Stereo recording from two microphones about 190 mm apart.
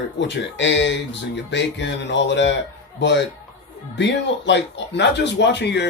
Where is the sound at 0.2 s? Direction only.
70° left (ahead or behind).